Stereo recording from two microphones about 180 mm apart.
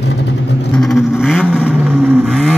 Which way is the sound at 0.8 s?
Centre (ahead or behind).